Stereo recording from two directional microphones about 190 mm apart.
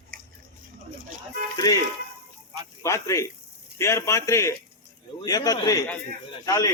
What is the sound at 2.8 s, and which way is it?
A man's voice, 15° left (ahead or behind).